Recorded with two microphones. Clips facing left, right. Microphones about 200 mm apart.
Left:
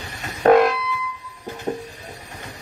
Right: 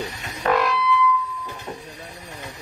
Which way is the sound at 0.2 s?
45° left (ahead or behind).